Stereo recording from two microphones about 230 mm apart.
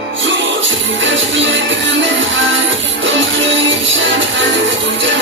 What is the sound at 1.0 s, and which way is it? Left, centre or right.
Music, right.